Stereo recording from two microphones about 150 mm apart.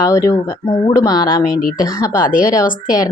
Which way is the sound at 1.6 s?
75° left (ahead or behind).